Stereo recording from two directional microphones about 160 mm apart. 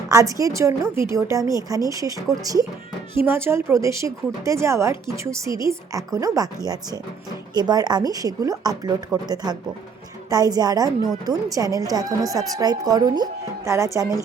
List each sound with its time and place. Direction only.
0.1 s a woman's voice: 20° right (ahead or behind)
7.5 s a woman's voice: 25° right (ahead or behind)